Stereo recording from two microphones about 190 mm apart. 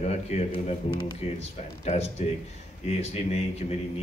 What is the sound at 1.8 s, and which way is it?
A man's voice, 35° left (ahead or behind).